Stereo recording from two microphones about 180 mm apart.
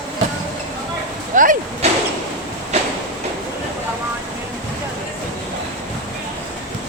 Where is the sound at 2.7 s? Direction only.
35° right (ahead or behind).